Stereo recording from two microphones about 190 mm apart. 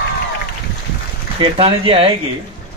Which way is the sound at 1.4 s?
30° right (ahead or behind).